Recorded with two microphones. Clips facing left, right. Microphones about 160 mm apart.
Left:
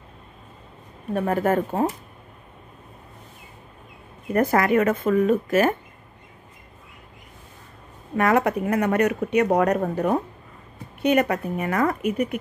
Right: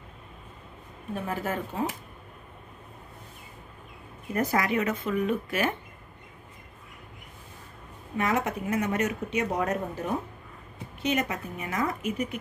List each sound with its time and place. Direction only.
1.1 s speech: 55° left (ahead or behind)
4.3 s speech: 55° left (ahead or behind)
8.2 s speech: 60° left (ahead or behind)